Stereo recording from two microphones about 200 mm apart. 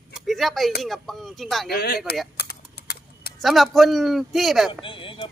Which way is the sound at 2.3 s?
55° left (ahead or behind).